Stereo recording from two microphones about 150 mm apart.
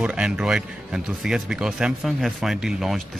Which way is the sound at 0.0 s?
5° right (ahead or behind).